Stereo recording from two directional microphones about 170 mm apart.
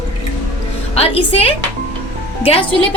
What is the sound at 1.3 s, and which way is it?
Speech, 35° left (ahead or behind).